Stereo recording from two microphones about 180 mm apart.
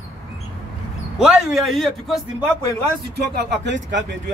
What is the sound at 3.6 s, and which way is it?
Speech, 80° right.